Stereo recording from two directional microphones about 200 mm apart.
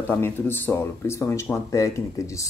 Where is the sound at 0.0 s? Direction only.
10° left (ahead or behind).